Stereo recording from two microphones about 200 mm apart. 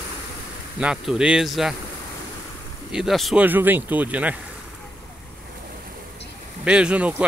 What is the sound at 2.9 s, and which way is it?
Speech, centre (ahead or behind).